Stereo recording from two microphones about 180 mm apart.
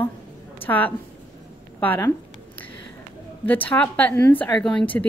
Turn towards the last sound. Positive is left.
turn(degrees=5)  # may be behind; listen again after turning